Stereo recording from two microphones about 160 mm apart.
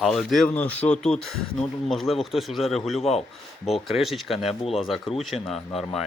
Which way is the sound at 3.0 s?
40° left (ahead or behind).